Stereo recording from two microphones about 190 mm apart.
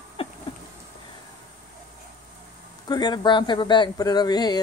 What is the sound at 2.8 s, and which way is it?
Speech, 20° left (ahead or behind).